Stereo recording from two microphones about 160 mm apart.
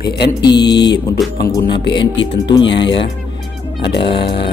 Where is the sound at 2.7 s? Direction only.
90° left.